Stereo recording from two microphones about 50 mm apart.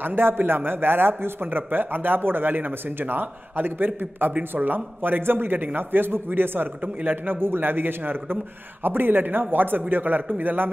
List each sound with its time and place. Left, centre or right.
0.0 s a man's voice: right
7.0 s a man's voice: right
7.3 s a man's voice: right